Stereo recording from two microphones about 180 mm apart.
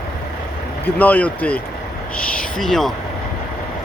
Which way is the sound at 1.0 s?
10° left (ahead or behind).